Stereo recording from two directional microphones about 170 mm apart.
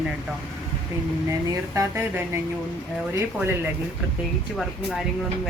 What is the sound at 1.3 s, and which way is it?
A woman's voice, 15° right (ahead or behind).